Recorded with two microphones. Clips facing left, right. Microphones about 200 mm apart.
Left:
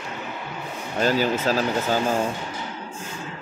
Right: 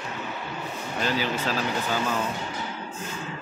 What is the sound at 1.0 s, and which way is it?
Speech, 45° left (ahead or behind).